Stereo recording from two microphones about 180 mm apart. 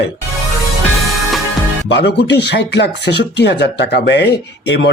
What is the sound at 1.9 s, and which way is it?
Speech, 70° left (ahead or behind).